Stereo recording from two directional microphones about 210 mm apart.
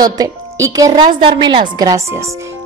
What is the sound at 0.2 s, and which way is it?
A woman's voice, 15° right (ahead or behind).